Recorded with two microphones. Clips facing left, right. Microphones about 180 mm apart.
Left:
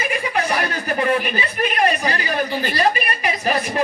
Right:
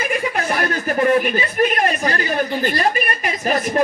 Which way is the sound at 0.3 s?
50° right (ahead or behind).